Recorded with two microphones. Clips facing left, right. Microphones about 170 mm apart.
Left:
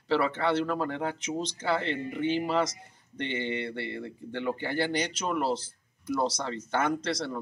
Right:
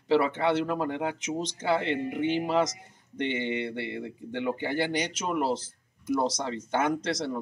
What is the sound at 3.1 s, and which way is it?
Speech, 15° right (ahead or behind).